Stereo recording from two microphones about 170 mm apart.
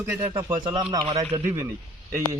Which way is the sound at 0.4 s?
25° right (ahead or behind).